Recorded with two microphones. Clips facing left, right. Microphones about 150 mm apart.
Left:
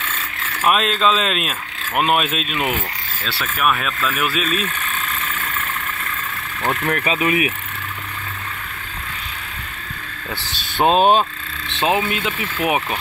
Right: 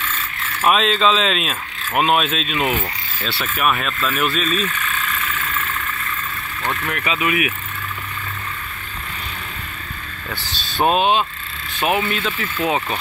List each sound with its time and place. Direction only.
0.7 s speech: 5° left (ahead or behind)
6.6 s speech: 40° left (ahead or behind)
11.0 s speech: 40° left (ahead or behind)
11.7 s speech: 20° left (ahead or behind)